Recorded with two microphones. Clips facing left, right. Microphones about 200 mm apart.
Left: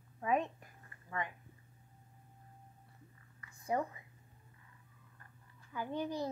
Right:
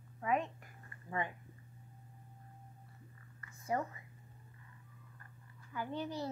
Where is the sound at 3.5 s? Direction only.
15° left (ahead or behind).